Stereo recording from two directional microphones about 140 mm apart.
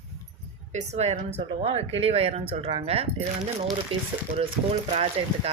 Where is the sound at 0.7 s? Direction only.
55° right (ahead or behind).